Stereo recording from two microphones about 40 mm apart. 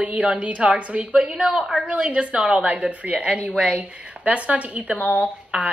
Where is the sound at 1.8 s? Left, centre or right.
Right.